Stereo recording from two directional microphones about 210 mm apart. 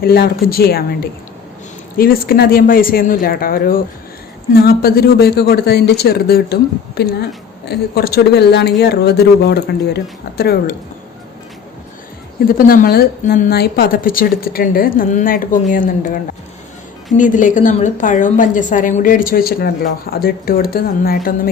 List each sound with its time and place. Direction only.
0.0 s a woman's voice: 45° left (ahead or behind)
2.0 s a woman's voice: 45° left (ahead or behind)
12.5 s a woman's voice: 45° left (ahead or behind)